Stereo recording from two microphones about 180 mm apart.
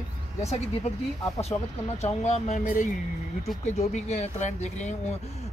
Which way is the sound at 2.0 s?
35° left (ahead or behind).